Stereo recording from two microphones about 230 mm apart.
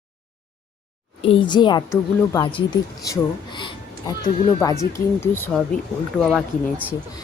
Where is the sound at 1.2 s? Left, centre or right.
Left.